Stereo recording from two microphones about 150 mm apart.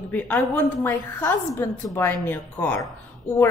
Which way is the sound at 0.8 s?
20° left (ahead or behind).